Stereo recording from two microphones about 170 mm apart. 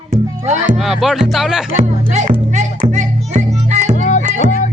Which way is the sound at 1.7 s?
45° right (ahead or behind).